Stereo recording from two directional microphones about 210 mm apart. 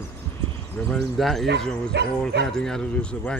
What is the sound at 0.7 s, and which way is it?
Speech, 5° left (ahead or behind).